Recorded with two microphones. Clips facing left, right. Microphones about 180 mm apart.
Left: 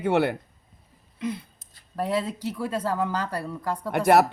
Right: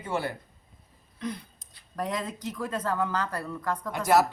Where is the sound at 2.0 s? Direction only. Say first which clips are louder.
Left 6 dB; 30° left (ahead or behind).